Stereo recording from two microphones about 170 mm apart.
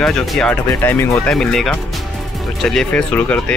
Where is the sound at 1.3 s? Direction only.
Centre (ahead or behind).